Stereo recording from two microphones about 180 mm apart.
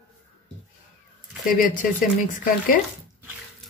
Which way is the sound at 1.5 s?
50° left (ahead or behind).